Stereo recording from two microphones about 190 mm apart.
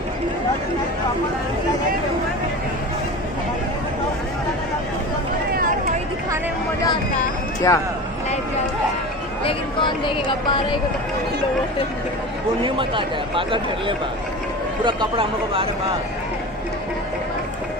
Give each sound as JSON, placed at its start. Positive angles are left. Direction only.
{"t": 7.7, "sound": "speech", "side_deg": 15}
{"t": 9.4, "sound": "speech", "side_deg": 25}
{"t": 12.6, "sound": "speech", "side_deg": -25}